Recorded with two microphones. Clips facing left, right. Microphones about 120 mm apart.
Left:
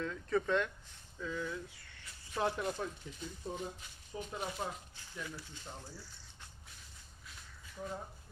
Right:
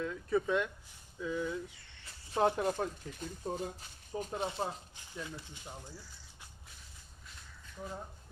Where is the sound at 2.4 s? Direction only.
45° right (ahead or behind); by 5.3 s 25° right (ahead or behind).